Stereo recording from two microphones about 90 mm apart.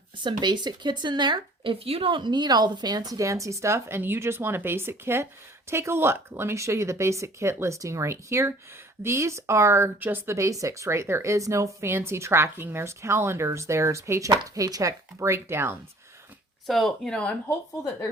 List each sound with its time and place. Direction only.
0.2 s speech: 60° right (ahead or behind); by 10.3 s 25° right (ahead or behind)
10.3 s speech: 35° right (ahead or behind)
16.6 s speech: centre (ahead or behind)